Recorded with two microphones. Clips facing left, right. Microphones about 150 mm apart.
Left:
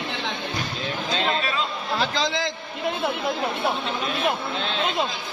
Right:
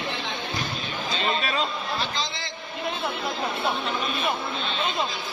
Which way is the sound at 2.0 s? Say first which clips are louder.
Left 6 dB; 90° left.